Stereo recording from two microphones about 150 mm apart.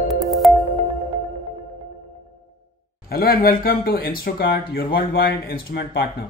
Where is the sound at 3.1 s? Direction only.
80° left.